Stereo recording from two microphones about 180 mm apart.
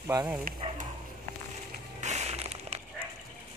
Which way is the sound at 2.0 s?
40° right (ahead or behind).